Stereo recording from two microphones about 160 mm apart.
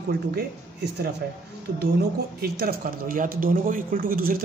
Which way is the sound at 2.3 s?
75° right (ahead or behind).